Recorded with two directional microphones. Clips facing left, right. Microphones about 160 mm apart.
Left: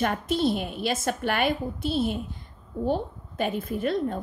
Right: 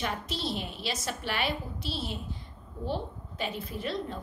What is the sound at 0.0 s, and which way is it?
A woman's voice, 50° left (ahead or behind).